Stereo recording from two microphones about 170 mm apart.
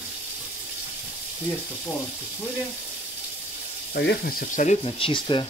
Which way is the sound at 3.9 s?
85° left.